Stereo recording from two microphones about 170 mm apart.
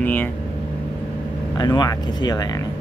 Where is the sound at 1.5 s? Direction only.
25° left (ahead or behind).